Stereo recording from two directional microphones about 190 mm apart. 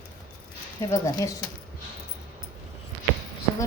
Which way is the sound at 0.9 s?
20° left (ahead or behind).